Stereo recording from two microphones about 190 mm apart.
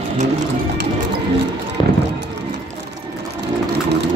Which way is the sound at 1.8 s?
25° left (ahead or behind).